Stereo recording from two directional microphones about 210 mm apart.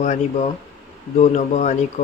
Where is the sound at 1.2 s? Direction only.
35° left (ahead or behind).